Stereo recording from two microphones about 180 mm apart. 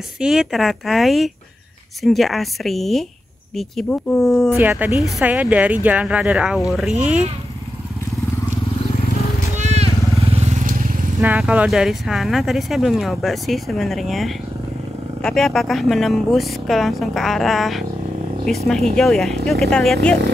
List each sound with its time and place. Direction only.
0.2 s speech: centre (ahead or behind)
4.6 s speech: 10° right (ahead or behind)
9.6 s vehicle: 35° right (ahead or behind)
11.1 s speech: 5° right (ahead or behind)